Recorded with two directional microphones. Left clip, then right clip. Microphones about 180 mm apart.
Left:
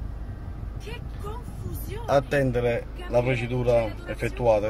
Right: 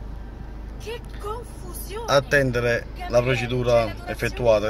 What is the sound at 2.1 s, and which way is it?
A man's voice, 5° left (ahead or behind).